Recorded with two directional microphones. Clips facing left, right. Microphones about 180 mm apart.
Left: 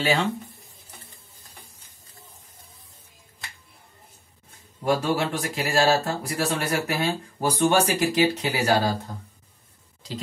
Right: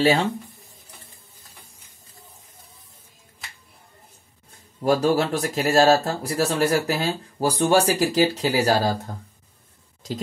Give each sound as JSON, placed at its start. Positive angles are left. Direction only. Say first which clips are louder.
{"t": 0.0, "sound": "speech", "louder": "right 4 dB", "side_deg": -35}
{"t": 4.8, "sound": "speech", "louder": "right 4 dB", "side_deg": -35}